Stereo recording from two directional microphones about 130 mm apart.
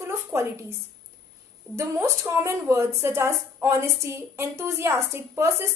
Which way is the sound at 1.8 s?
20° right (ahead or behind).